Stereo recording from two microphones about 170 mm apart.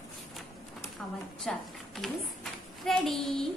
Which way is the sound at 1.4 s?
Centre (ahead or behind).